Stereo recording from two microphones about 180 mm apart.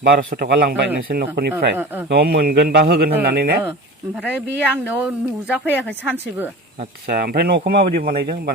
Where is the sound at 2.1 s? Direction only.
65° right (ahead or behind).